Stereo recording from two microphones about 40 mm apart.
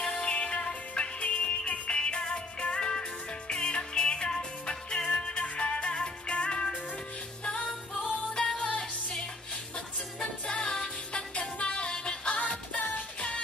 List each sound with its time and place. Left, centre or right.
0.0 s music: left
8.4 s music: centre
10.4 s music: left
12.7 s music: left